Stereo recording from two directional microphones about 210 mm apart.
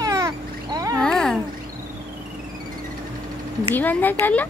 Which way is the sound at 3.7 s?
10° left (ahead or behind).